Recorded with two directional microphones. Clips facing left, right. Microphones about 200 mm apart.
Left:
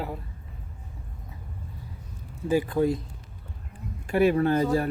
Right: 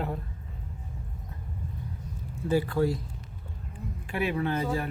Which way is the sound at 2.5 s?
15° left (ahead or behind).